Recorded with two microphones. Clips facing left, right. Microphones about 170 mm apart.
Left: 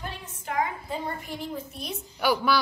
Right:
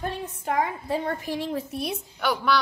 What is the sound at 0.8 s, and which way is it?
A woman's voice, 75° right (ahead or behind).